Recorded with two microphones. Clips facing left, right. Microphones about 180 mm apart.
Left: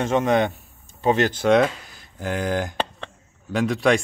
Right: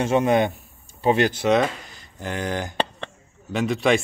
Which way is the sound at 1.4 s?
Centre (ahead or behind).